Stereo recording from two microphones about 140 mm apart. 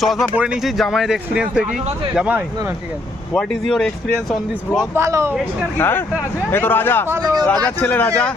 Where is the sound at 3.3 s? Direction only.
5° left (ahead or behind).